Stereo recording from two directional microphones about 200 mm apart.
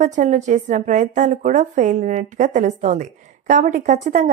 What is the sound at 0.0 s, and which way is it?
A woman's voice, 35° right (ahead or behind).